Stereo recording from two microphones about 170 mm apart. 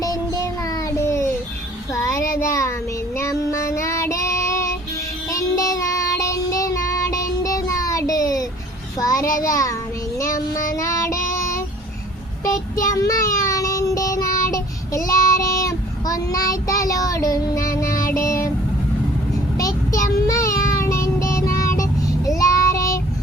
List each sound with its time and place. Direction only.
0.0 s child singing: 20° left (ahead or behind)
2.4 s a child's voice: 15° left (ahead or behind)
3.2 s child singing: 15° left (ahead or behind)
10.8 s child singing: 15° left (ahead or behind)
12.9 s child singing: 20° left (ahead or behind)
17.8 s child singing: 55° left (ahead or behind)
19.5 s child singing: 20° left (ahead or behind)